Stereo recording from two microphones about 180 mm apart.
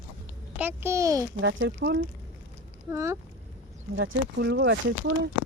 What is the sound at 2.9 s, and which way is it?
Speech, 15° right (ahead or behind).